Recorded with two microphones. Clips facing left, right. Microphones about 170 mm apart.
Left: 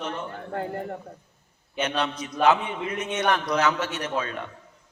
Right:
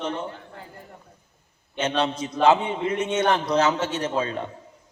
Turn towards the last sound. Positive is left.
turn(degrees=-25)  # may be behind; listen again after turning